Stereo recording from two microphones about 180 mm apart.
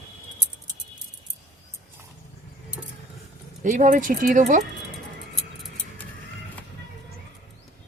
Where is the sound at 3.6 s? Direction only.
45° right (ahead or behind).